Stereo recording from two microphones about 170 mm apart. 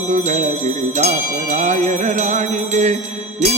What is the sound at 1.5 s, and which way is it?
Jingle bell, 45° right (ahead or behind).